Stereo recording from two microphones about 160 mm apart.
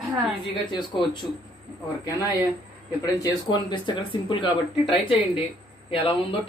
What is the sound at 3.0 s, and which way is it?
A man's voice, 25° left (ahead or behind).